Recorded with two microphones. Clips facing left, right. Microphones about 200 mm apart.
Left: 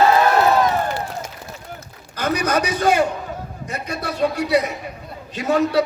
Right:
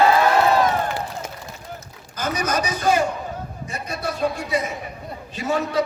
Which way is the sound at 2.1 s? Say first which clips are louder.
Left 3 dB; 65° left (ahead or behind).